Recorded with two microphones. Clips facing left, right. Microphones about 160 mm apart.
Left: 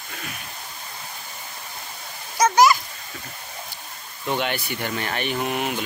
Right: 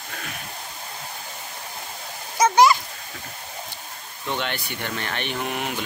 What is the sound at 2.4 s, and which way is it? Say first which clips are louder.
Splash: even; 25° right (ahead or behind).